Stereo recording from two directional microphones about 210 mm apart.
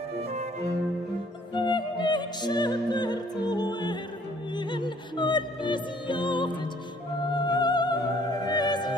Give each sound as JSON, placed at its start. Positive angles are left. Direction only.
{"t": 1.5, "sound": "music", "side_deg": 20}